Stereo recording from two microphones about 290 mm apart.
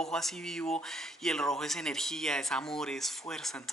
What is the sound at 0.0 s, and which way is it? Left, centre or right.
Speech, centre.